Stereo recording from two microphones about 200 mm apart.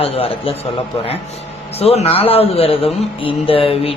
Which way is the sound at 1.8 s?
30° left (ahead or behind).